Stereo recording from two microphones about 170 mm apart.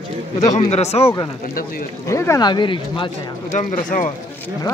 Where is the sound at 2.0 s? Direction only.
15° left (ahead or behind).